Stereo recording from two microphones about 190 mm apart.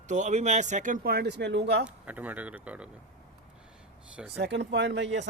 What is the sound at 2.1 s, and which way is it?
Speech, 10° right (ahead or behind).